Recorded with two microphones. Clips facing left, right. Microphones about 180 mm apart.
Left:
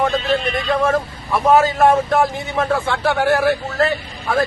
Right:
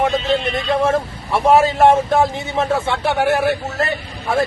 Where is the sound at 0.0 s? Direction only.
25° right (ahead or behind).